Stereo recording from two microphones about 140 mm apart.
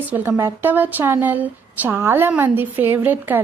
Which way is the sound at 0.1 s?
15° right (ahead or behind).